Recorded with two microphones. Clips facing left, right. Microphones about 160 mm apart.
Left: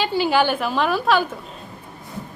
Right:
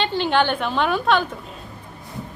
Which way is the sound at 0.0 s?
5° left (ahead or behind).